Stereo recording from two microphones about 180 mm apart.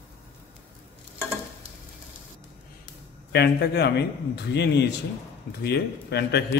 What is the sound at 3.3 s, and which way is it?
A man's voice, 65° left (ahead or behind).